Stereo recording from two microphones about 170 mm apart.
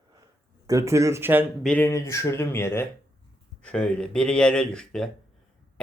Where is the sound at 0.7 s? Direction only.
20° right (ahead or behind).